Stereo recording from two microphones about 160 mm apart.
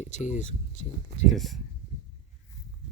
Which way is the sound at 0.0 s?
45° left (ahead or behind).